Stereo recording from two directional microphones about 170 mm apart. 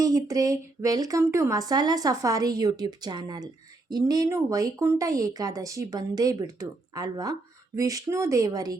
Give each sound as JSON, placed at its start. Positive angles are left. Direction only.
{"t": 0.0, "sound": "speech", "side_deg": -20}